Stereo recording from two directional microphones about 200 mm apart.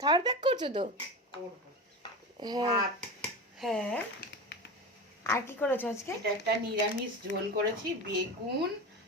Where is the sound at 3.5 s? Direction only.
Centre (ahead or behind).